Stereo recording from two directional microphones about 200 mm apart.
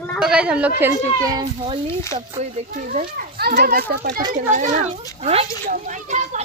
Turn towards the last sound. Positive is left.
turn(degrees=-35)  # may be behind; listen again after turning